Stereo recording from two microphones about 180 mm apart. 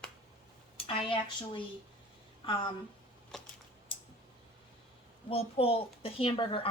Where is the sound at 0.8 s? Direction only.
30° left (ahead or behind).